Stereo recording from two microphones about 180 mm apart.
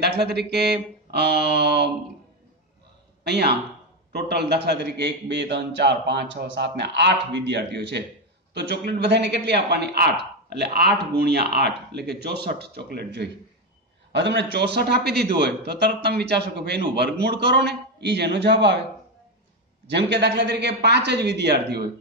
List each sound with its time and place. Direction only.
0.0 s a man's voice: 65° right (ahead or behind)
3.3 s a man's voice: 65° right (ahead or behind)
19.9 s a man's voice: 70° right (ahead or behind)